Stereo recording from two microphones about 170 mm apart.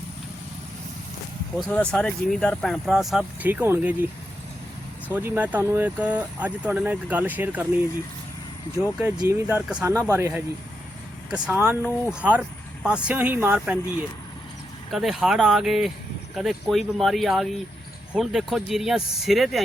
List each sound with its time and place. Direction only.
1.5 s speech: 5° left (ahead or behind)
5.0 s speech: 10° right (ahead or behind)
8.8 s speech: 5° right (ahead or behind)
14.8 s speech: centre (ahead or behind)